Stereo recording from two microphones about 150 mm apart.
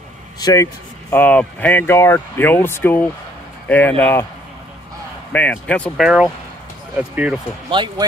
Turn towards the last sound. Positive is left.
turn(degrees=-35)  # may be behind; listen again after turning